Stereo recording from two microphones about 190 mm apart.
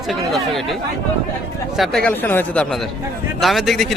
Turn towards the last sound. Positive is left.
turn(degrees=0)  # may be behind; listen again after turning